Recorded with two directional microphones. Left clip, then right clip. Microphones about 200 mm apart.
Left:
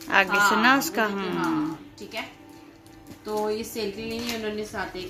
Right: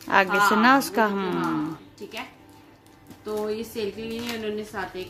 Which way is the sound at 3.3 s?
Centre (ahead or behind).